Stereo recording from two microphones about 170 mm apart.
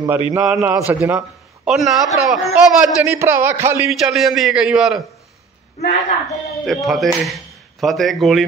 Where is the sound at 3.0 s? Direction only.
15° right (ahead or behind).